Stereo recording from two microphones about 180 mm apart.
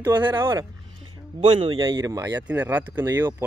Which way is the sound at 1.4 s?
30° right (ahead or behind).